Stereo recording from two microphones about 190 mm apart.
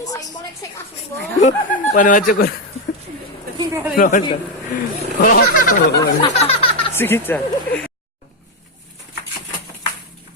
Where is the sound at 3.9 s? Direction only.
40° left (ahead or behind).